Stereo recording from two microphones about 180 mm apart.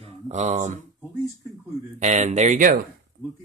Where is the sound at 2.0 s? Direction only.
40° right (ahead or behind).